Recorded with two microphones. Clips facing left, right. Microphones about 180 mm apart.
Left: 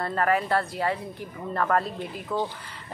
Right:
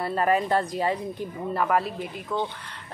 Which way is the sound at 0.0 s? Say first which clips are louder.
Right 1 dB; 15° right (ahead or behind).